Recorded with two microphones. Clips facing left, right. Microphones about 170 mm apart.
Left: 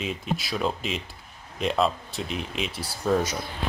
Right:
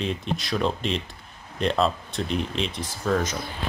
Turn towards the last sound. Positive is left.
turn(degrees=5)  # may be behind; listen again after turning